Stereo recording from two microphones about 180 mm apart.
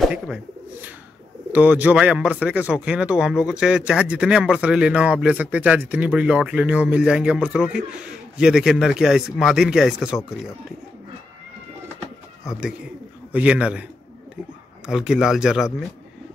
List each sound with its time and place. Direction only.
0.0 s speech: 5° right (ahead or behind)
13.3 s speech: 10° right (ahead or behind)
14.9 s speech: 5° right (ahead or behind)